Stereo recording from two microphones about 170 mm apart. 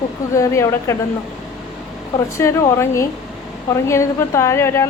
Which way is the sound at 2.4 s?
15° left (ahead or behind).